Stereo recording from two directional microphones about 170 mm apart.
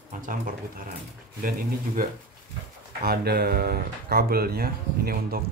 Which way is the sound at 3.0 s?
65° right (ahead or behind).